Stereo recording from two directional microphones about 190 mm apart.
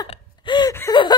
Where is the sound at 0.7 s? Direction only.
15° left (ahead or behind).